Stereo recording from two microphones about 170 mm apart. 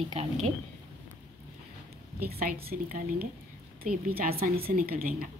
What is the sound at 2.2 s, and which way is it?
A woman's voice, 60° right (ahead or behind).